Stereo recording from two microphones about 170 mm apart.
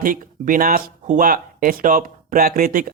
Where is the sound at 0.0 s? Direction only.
55° right (ahead or behind).